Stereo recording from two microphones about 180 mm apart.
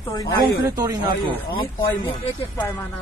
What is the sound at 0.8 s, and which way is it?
Speech, 20° right (ahead or behind).